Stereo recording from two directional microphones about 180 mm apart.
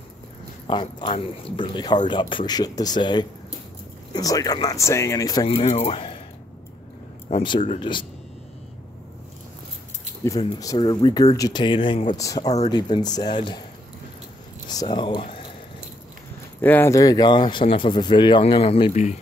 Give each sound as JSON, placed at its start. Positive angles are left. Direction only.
{"t": 0.7, "sound": "speech", "side_deg": 25}
{"t": 5.5, "sound": "speech", "side_deg": 35}
{"t": 7.2, "sound": "speech", "side_deg": 30}
{"t": 10.2, "sound": "speech", "side_deg": 15}
{"t": 14.7, "sound": "speech", "side_deg": 25}
{"t": 16.6, "sound": "speech", "side_deg": 10}